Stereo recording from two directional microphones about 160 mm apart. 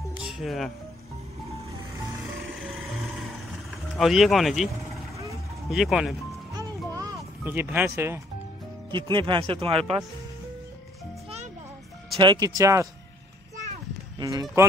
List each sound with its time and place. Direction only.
0.2 s music: centre (ahead or behind)
2.7 s vehicle: centre (ahead or behind)
5.7 s speech: centre (ahead or behind)
7.0 s a sound: 15° right (ahead or behind)
8.9 s speech: 30° right (ahead or behind)
12.2 s speech: 25° right (ahead or behind)
14.2 s speech: 20° right (ahead or behind)